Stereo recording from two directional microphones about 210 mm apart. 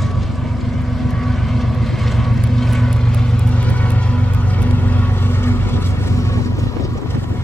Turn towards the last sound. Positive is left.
turn(degrees=10)  # may be behind; listen again after turning